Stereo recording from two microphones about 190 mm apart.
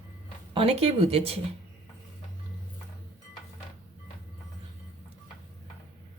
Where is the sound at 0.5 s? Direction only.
30° right (ahead or behind).